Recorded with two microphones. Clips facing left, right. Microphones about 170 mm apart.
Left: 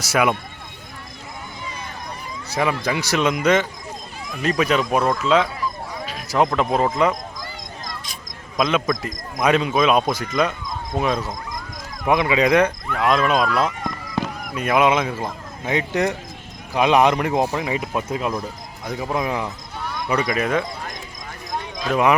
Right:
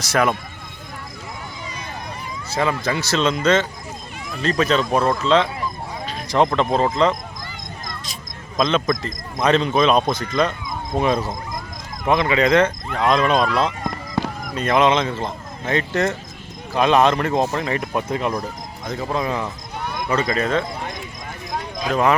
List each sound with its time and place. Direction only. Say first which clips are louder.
0.0 s speech: even; 10° left (ahead or behind)
2.5 s speech: even; 10° left (ahead or behind)
6.1 s a sound: right 1 dB; 5° left (ahead or behind)
6.6 s speech: right 1 dB; 10° left (ahead or behind)
8.5 s speech: right 1 dB; 10° left (ahead or behind)
12.0 s speech: even; 15° left (ahead or behind)
13.5 s a sound: right 1 dB; 30° right (ahead or behind)
14.5 s speech: right 1 dB; 10° left (ahead or behind)
21.5 s clip-clop: even; 10° right (ahead or behind)